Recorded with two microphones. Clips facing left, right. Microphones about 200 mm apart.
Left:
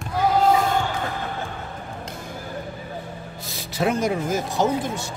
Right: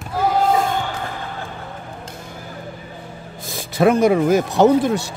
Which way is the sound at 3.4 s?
50° right (ahead or behind).